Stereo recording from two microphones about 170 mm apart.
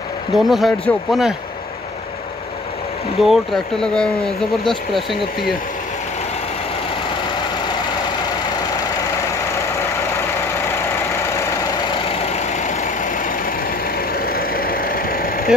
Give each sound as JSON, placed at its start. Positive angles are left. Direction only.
{"t": 0.4, "sound": "speech", "side_deg": 0}
{"t": 3.2, "sound": "speech", "side_deg": 0}
{"t": 12.2, "sound": "vehicle", "side_deg": 40}